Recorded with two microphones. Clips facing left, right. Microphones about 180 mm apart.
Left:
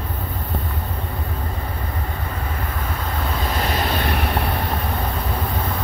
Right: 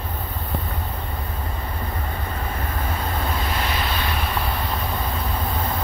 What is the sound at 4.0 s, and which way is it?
Vehicle, 60° left (ahead or behind).